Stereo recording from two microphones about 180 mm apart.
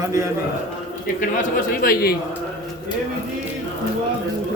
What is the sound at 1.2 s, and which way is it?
Speech, 50° left (ahead or behind).